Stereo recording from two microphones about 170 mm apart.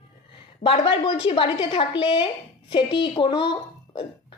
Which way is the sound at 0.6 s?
30° left (ahead or behind).